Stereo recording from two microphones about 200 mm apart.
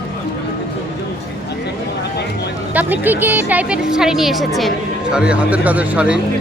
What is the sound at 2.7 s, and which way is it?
A woman's voice, 10° right (ahead or behind).